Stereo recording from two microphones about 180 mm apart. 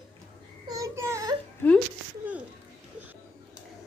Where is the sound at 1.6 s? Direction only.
10° left (ahead or behind).